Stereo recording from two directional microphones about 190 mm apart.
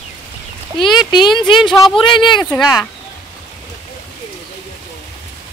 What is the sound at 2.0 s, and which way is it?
Speech, 25° left (ahead or behind).